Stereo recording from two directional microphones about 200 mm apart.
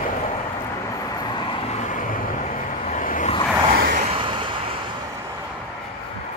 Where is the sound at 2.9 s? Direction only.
40° left (ahead or behind).